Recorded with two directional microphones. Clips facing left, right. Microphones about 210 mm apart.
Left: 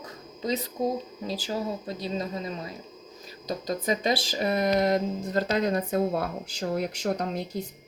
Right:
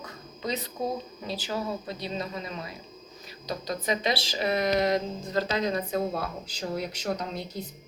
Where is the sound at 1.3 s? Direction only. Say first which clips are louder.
Left 1 dB; 40° left (ahead or behind).